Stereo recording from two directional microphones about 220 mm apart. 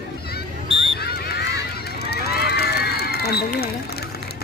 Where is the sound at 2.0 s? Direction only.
45° left (ahead or behind).